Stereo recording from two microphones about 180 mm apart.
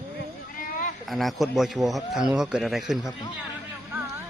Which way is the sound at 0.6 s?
50° left (ahead or behind).